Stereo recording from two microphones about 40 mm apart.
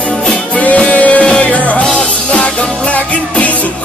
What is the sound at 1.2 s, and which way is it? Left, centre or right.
Music, left.